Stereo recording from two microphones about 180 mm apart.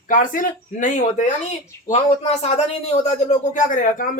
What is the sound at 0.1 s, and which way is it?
Speech, 50° left (ahead or behind).